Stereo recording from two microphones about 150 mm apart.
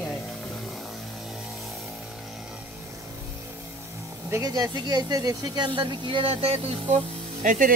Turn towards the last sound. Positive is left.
turn(degrees=-60)  # may be behind; listen again after turning